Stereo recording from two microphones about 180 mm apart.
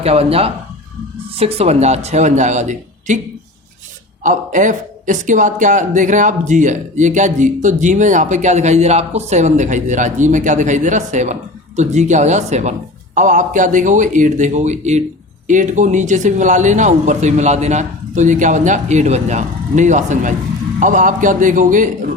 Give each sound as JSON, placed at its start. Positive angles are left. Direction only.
{"t": 0.0, "sound": "speech", "side_deg": -35}
{"t": 4.2, "sound": "speech", "side_deg": -45}